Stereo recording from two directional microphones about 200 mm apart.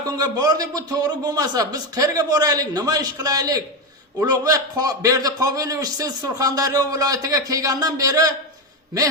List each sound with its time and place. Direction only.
0.2 s a man's voice: 20° right (ahead or behind)